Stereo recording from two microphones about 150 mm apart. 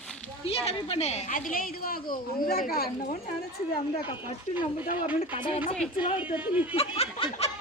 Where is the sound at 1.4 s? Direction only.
70° left (ahead or behind).